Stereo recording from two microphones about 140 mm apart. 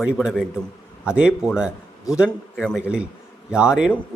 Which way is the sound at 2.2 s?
5° left (ahead or behind).